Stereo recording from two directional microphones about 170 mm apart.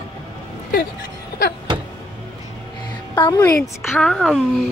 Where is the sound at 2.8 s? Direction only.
25° left (ahead or behind).